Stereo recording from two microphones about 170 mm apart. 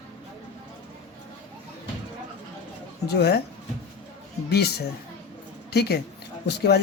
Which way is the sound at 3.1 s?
75° left (ahead or behind).